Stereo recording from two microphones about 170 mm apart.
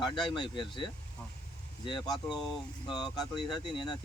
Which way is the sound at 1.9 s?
30° left (ahead or behind).